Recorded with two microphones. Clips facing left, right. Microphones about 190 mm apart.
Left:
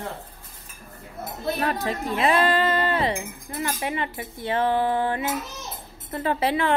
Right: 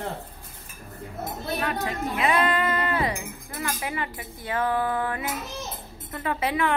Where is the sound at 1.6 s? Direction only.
35° left (ahead or behind).